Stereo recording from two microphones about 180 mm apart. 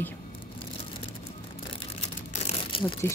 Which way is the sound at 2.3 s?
35° left (ahead or behind).